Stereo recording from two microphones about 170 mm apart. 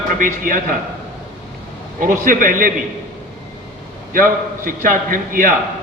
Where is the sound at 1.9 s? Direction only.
55° right (ahead or behind).